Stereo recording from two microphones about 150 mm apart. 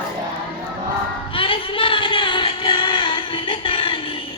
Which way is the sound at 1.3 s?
35° left (ahead or behind).